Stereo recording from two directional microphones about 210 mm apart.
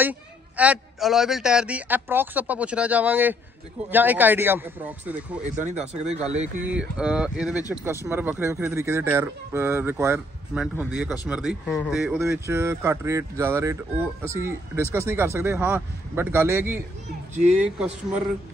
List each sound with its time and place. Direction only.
0.0 s speech: 5° right (ahead or behind)
5.6 s speech: 30° right (ahead or behind)
6.5 s speech: 5° right (ahead or behind)